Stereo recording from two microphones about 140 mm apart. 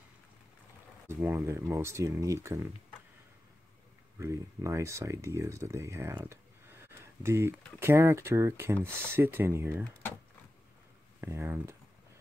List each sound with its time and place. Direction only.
1.0 s speech: 15° right (ahead or behind)
4.2 s speech: 20° right (ahead or behind)
11.1 s speech: 20° right (ahead or behind)